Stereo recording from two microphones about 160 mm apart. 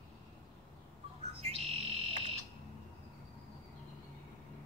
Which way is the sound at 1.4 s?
40° right (ahead or behind).